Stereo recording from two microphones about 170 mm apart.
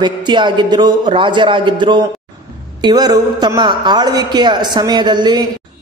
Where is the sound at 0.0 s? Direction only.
25° right (ahead or behind).